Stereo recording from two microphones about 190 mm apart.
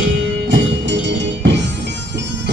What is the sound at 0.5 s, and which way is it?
Music, 65° right (ahead or behind).